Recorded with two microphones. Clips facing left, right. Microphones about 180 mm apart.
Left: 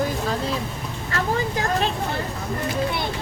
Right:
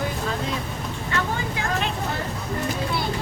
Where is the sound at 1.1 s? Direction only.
35° left (ahead or behind).